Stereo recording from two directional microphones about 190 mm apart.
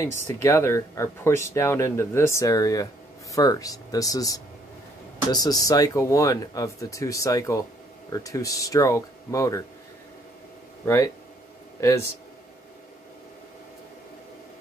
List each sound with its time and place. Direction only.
0.0 s speech: 15° left (ahead or behind)
11.8 s speech: 15° left (ahead or behind)